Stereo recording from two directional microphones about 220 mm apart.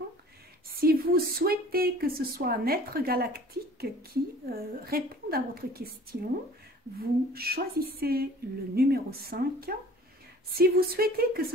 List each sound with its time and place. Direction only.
0.7 s speech: 45° right (ahead or behind)